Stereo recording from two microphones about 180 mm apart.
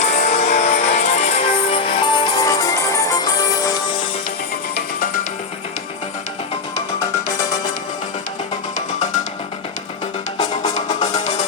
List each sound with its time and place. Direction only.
0.0 s music: 40° left (ahead or behind); by 3.8 s 20° left (ahead or behind)
10.3 s music: 40° left (ahead or behind)